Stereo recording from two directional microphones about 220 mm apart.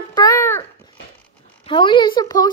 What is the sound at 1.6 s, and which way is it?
Speech, 20° left (ahead or behind).